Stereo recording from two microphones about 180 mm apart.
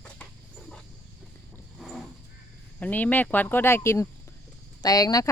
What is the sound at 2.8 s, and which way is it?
Speech, 10° left (ahead or behind).